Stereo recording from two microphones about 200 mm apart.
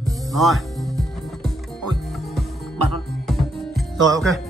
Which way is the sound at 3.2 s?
Centre (ahead or behind).